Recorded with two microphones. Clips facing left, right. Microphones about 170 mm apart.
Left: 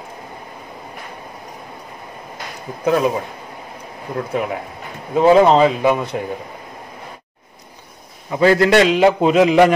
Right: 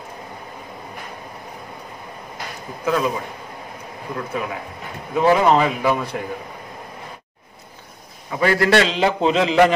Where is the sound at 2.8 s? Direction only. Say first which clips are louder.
Left 4 dB; 25° left (ahead or behind).